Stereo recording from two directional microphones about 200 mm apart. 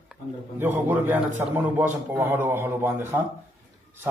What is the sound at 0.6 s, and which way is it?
A man's voice, 10° right (ahead or behind).